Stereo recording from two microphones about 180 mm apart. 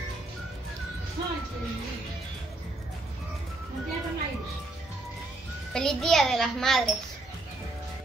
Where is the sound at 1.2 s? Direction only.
25° right (ahead or behind).